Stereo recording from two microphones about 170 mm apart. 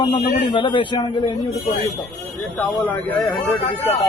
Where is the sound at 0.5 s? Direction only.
30° left (ahead or behind).